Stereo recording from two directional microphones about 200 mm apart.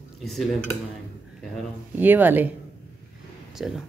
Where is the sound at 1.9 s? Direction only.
10° right (ahead or behind).